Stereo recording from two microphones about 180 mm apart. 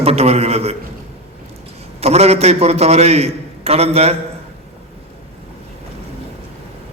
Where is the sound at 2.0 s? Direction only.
35° right (ahead or behind).